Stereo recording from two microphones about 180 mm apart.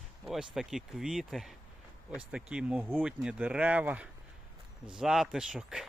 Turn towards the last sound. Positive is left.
turn(degrees=-5)  # may be behind; listen again after turning